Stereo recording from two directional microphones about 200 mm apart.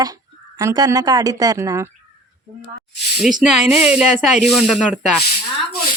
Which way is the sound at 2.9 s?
55° left (ahead or behind).